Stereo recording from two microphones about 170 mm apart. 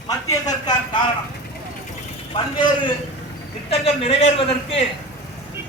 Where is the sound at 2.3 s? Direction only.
30° left (ahead or behind).